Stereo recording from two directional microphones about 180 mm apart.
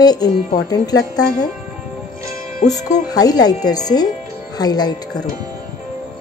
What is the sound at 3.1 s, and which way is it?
Speech, 20° left (ahead or behind).